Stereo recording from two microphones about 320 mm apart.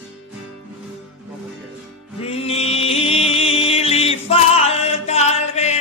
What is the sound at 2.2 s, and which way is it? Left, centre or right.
Music, centre.